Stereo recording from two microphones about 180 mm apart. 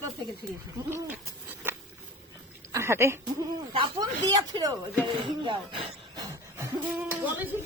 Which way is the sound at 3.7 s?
25° right (ahead or behind).